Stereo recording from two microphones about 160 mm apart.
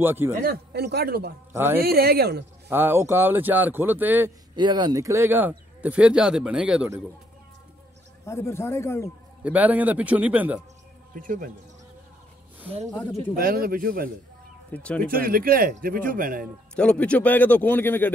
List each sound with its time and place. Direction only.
0.0 s speech: 15° right (ahead or behind)
0.5 s a man's voice: 90° right
1.5 s speech: 15° right (ahead or behind)
1.8 s speech: 75° right (ahead or behind)
2.7 s speech: 15° right (ahead or behind)
4.6 s speech: 30° right (ahead or behind); by 6.9 s 5° right (ahead or behind)
8.3 s a man's voice: 15° left (ahead or behind)
9.4 s speech: 10° right (ahead or behind)
11.1 s a man's voice: 60° right (ahead or behind)
12.9 s a man's voice: 10° left (ahead or behind)
13.4 s a man's voice: 65° right (ahead or behind)
14.7 s a man's voice: 5° left (ahead or behind)
15.0 s a man's voice: 65° right (ahead or behind)
16.7 s a man's voice: 5° left (ahead or behind)